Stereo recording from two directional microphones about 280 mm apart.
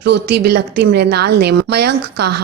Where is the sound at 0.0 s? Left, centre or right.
Right.